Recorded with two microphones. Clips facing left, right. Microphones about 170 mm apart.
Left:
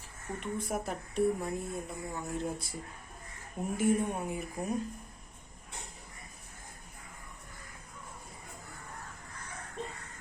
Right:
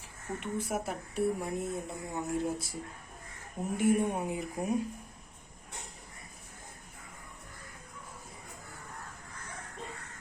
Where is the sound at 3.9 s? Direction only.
15° right (ahead or behind).